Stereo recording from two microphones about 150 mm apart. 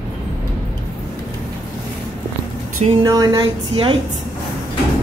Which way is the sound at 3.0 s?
25° right (ahead or behind).